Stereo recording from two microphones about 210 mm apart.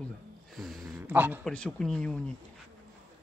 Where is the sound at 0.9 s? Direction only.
10° right (ahead or behind).